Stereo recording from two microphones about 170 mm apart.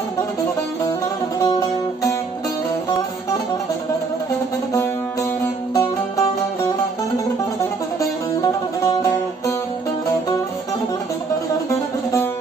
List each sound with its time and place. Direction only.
5.8 s music: 20° left (ahead or behind)